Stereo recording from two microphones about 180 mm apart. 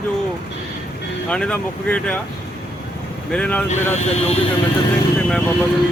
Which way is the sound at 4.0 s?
35° left (ahead or behind).